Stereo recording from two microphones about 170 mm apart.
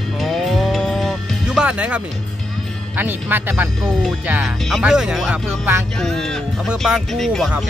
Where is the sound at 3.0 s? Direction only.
10° right (ahead or behind).